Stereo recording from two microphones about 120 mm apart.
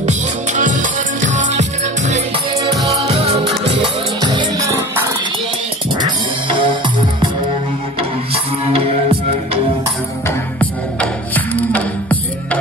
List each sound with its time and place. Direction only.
0.6 s music: 90° right
2.9 s music: 55° right (ahead or behind); by 4.5 s 40° right (ahead or behind)
4.7 s music: 20° right (ahead or behind)
6.0 s music: 40° right (ahead or behind)
10.2 s music: 15° left (ahead or behind)